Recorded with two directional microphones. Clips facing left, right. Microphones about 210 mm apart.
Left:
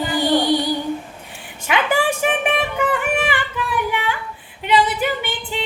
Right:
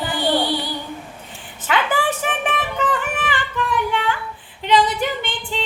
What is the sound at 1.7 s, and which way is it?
Music, 15° left (ahead or behind).